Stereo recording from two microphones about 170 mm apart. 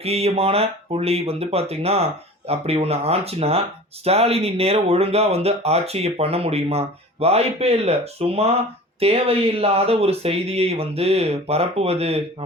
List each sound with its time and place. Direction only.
0.0 s speech: 35° right (ahead or behind)